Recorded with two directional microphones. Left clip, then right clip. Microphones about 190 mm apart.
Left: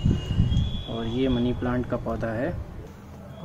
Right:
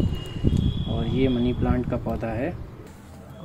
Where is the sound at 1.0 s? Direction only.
Centre (ahead or behind).